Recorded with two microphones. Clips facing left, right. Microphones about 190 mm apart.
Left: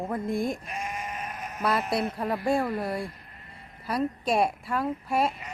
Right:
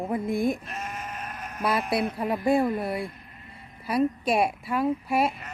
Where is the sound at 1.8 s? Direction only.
Centre (ahead or behind).